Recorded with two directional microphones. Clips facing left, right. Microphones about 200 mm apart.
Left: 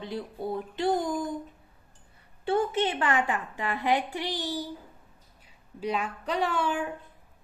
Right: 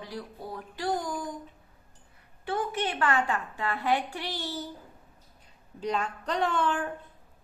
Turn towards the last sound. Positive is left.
turn(degrees=10)  # may be behind; listen again after turning